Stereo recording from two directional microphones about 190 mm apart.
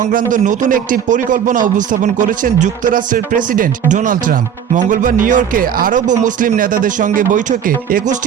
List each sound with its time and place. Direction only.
0.0 s speech: 45° right (ahead or behind)